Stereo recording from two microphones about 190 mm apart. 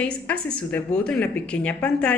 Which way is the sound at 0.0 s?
5° left (ahead or behind).